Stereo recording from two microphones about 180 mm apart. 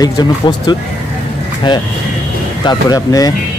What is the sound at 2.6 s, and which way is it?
Speech, 25° left (ahead or behind).